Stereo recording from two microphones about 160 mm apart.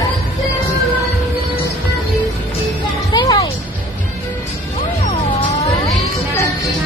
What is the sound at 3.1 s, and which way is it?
Music, 25° left (ahead or behind).